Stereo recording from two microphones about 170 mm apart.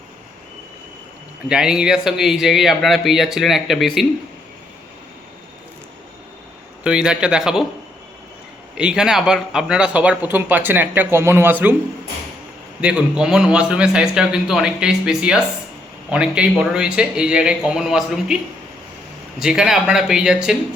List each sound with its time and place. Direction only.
1.5 s a man's voice: 5° right (ahead or behind)
6.8 s a man's voice: 5° right (ahead or behind)
8.8 s speech: 5° right (ahead or behind)
12.8 s a man's voice: 5° right (ahead or behind)
19.4 s a man's voice: 5° right (ahead or behind)